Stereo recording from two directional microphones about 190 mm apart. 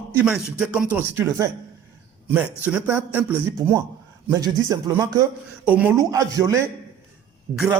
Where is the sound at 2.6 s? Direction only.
10° right (ahead or behind).